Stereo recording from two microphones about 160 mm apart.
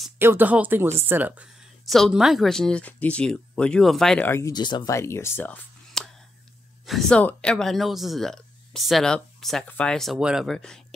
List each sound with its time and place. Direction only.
0.2 s speech: 10° right (ahead or behind); by 4.3 s 5° left (ahead or behind)
4.3 s speech: 20° left (ahead or behind)
4.9 s speech: 15° left (ahead or behind)